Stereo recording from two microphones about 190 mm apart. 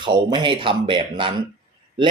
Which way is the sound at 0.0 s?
25° right (ahead or behind).